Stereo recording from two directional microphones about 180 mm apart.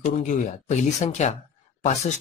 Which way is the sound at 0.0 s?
45° left (ahead or behind).